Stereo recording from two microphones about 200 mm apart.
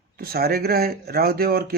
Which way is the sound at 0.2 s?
50° right (ahead or behind).